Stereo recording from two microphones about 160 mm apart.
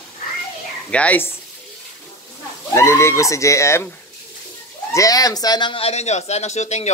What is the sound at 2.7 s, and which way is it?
Speech, 20° left (ahead or behind).